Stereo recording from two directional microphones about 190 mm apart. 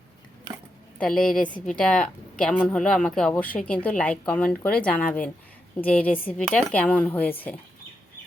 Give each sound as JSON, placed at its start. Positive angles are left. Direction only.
{"t": 0.9, "sound": "speech", "side_deg": 5}